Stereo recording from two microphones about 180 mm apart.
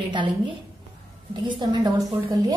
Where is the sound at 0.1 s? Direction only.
25° right (ahead or behind).